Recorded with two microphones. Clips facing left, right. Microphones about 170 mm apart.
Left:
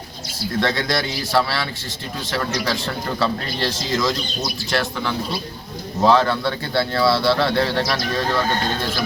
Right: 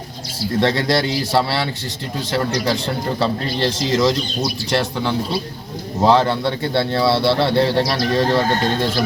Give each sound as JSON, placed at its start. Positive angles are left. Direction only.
{"t": 0.6, "sound": "speech", "side_deg": -30}